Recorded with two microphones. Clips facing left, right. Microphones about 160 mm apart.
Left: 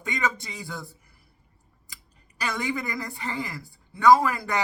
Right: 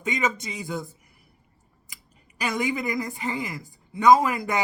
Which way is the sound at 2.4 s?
15° right (ahead or behind).